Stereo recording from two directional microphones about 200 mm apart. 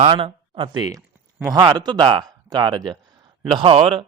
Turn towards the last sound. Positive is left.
turn(degrees=-25)  # may be behind; listen again after turning